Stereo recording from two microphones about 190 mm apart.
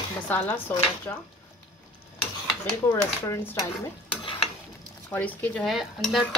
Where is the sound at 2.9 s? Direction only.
10° left (ahead or behind).